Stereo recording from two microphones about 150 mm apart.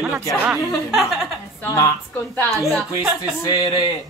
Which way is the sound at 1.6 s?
20° left (ahead or behind).